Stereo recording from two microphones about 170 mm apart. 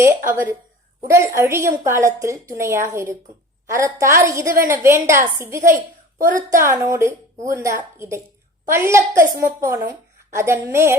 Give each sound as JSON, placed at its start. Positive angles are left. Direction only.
{"t": 0.0, "sound": "a woman's voice", "side_deg": -15}
{"t": 6.1, "sound": "a woman's voice", "side_deg": -55}
{"t": 6.5, "sound": "a woman's voice", "side_deg": -15}